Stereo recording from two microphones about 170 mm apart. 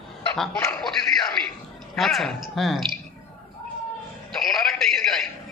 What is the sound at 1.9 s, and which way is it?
A man's voice, centre (ahead or behind).